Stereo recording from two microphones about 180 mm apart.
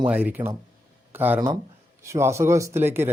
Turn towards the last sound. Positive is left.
turn(degrees=-15)  # may be behind; listen again after turning